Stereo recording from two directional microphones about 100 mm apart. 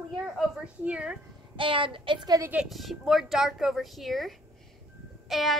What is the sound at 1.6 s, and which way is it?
Speech, 55° right (ahead or behind).